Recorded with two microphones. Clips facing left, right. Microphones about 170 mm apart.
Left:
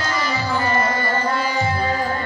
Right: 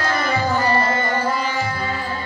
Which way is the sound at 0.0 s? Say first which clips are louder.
Right 2 dB; 60° right (ahead or behind).